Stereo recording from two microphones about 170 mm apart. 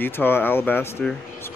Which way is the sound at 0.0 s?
15° left (ahead or behind).